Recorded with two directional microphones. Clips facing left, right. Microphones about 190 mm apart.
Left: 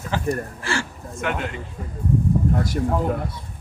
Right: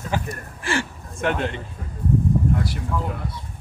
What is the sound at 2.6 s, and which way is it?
Speech, 45° left (ahead or behind).